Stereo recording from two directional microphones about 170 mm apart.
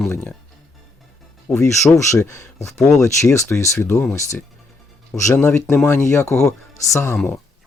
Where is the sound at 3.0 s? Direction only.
15° left (ahead or behind).